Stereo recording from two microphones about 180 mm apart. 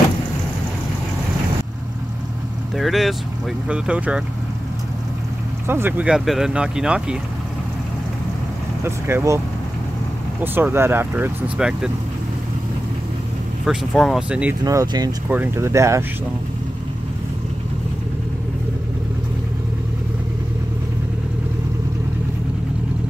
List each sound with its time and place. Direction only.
2.8 s speech: centre (ahead or behind)
5.7 s speech: 10° right (ahead or behind)
8.8 s speech: 15° right (ahead or behind)
10.4 s speech: 10° right (ahead or behind)
13.7 s speech: centre (ahead or behind)
14.6 s speech: 20° right (ahead or behind)
15.2 s speech: 10° right (ahead or behind)